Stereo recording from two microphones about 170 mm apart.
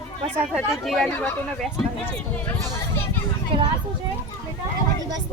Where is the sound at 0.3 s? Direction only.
Centre (ahead or behind).